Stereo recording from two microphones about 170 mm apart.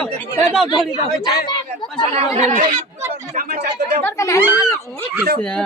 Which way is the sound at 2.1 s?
45° right (ahead or behind).